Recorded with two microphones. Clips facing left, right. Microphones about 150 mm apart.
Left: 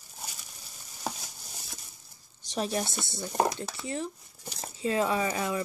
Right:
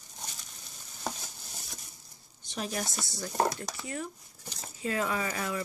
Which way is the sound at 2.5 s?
30° left (ahead or behind).